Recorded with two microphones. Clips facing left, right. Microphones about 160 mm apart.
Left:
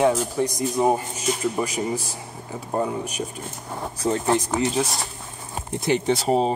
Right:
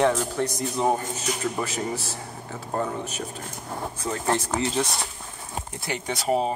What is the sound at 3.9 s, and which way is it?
Speech, 30° left (ahead or behind).